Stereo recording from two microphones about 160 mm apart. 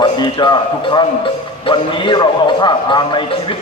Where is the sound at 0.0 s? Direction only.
30° left (ahead or behind).